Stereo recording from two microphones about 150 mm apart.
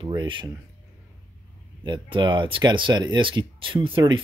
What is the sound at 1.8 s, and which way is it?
Speech, 30° right (ahead or behind).